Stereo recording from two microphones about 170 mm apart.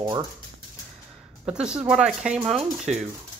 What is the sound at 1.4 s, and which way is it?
Speech, 5° right (ahead or behind).